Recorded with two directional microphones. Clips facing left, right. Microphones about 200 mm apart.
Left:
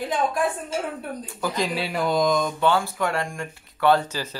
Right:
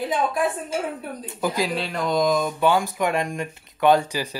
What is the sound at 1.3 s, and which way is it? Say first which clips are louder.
Speech: right 5 dB; 20° right (ahead or behind).